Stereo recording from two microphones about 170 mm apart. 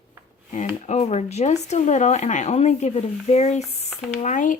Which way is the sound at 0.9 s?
40° left (ahead or behind).